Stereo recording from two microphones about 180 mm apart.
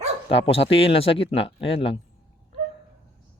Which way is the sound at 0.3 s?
30° left (ahead or behind).